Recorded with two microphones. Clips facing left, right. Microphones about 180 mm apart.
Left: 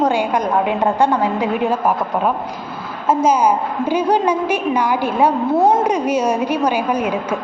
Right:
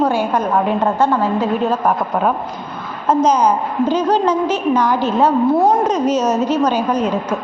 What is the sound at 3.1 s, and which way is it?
A woman's voice, 10° left (ahead or behind).